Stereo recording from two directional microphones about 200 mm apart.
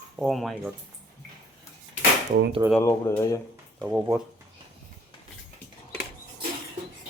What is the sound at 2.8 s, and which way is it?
Speech, 15° left (ahead or behind).